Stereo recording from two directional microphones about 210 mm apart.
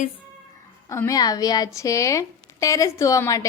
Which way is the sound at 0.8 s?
15° left (ahead or behind).